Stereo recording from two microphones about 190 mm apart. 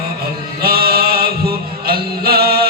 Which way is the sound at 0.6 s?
55° right (ahead or behind).